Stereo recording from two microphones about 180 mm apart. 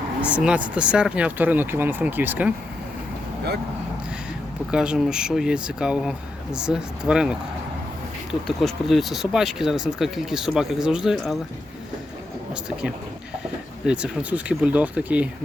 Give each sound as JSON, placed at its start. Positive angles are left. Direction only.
{"t": 0.2, "sound": "speech", "side_deg": -5}
{"t": 4.7, "sound": "speech", "side_deg": -5}
{"t": 13.8, "sound": "speech", "side_deg": -5}